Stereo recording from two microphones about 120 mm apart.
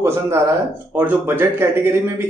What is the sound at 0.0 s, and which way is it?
A man's voice, 20° right (ahead or behind).